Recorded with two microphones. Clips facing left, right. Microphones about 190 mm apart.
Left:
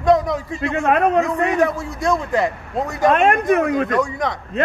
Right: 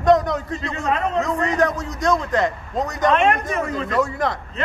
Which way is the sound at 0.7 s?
65° left (ahead or behind).